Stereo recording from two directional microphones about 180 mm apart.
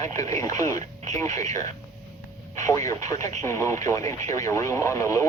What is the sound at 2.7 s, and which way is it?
Speech, 15° left (ahead or behind).